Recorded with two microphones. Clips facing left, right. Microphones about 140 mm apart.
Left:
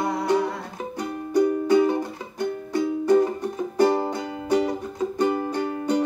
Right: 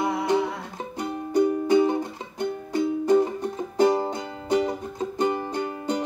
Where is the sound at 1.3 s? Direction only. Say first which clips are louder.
Left 1 dB; 20° right (ahead or behind).